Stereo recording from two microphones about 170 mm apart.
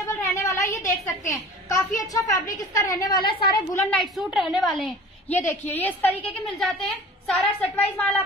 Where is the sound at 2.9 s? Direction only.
25° left (ahead or behind).